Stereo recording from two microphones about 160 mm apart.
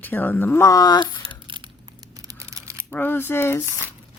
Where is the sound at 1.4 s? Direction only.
30° right (ahead or behind).